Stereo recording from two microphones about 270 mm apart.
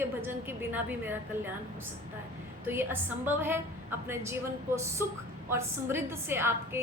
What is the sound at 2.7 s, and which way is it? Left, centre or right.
A woman's voice, centre.